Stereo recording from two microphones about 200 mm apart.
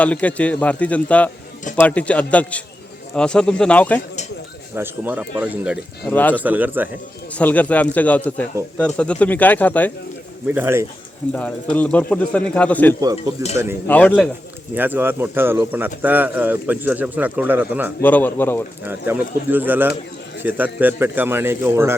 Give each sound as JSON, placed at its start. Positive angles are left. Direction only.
{"t": 0.0, "sound": "speech", "side_deg": 5}
{"t": 4.7, "sound": "a man's voice", "side_deg": -10}
{"t": 6.1, "sound": "speech", "side_deg": 10}
{"t": 6.4, "sound": "a man's voice", "side_deg": -10}
{"t": 7.3, "sound": "speech", "side_deg": 5}
{"t": 10.4, "sound": "a man's voice", "side_deg": -10}
{"t": 11.3, "sound": "speech", "side_deg": 5}
{"t": 13.4, "sound": "a man's voice", "side_deg": -15}
{"t": 13.8, "sound": "speech", "side_deg": 10}
{"t": 14.8, "sound": "a man's voice", "side_deg": -10}
{"t": 18.0, "sound": "speech", "side_deg": 10}
{"t": 18.9, "sound": "a man's voice", "side_deg": -10}